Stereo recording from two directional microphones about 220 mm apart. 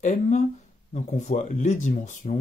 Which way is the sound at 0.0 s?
35° left (ahead or behind).